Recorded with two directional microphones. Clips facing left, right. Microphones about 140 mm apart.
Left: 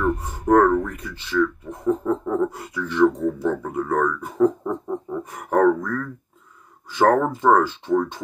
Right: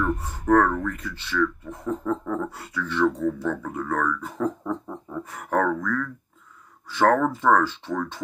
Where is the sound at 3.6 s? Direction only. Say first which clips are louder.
Left 4 dB; 25° left (ahead or behind).